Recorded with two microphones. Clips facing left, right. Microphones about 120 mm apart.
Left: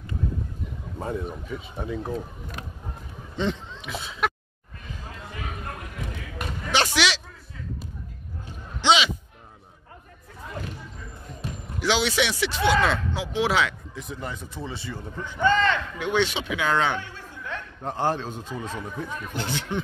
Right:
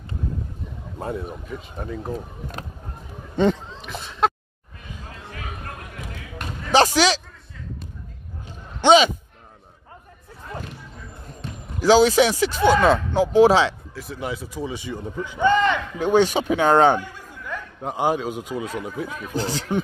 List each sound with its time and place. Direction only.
0.9 s speech: 5° right (ahead or behind)
3.3 s speech: 45° right (ahead or behind)
3.8 s speech: centre (ahead or behind)
6.7 s speech: 40° right (ahead or behind)
8.8 s a sound: 45° right (ahead or behind)
11.8 s speech: 40° right (ahead or behind)
13.9 s speech: centre (ahead or behind)
16.0 s speech: 40° right (ahead or behind)
17.0 s speech: 10° right (ahead or behind)
19.3 s speech: 35° right (ahead or behind)